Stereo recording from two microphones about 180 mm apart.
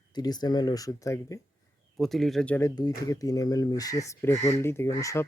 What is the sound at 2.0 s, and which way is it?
Speech, centre (ahead or behind).